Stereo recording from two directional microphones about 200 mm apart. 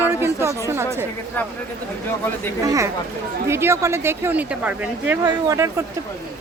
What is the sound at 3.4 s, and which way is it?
Speech, 15° right (ahead or behind).